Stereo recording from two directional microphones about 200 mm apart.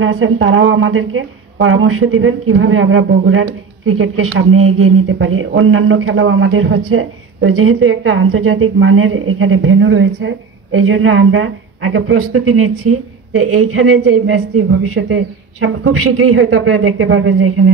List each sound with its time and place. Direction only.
0.0 s a woman's voice: 80° right